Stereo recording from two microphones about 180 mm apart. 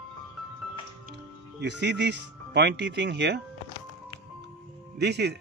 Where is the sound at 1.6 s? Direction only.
75° right (ahead or behind).